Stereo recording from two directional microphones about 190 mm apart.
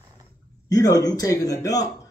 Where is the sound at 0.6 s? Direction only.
20° left (ahead or behind).